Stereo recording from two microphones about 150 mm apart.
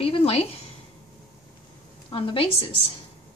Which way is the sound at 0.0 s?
40° left (ahead or behind).